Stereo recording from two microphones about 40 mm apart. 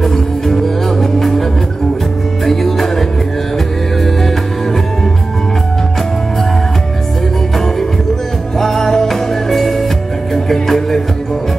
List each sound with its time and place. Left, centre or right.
0.0 s music: centre
2.4 s music: centre
8.5 s music: centre